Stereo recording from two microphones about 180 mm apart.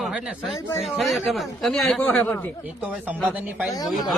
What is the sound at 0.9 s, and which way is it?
Speech, centre (ahead or behind).